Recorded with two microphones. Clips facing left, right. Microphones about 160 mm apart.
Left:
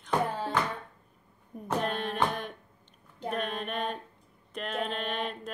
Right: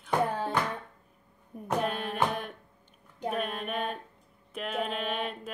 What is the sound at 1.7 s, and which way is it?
Music, 5° right (ahead or behind).